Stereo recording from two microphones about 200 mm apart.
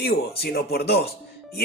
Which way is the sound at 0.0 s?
50° left (ahead or behind).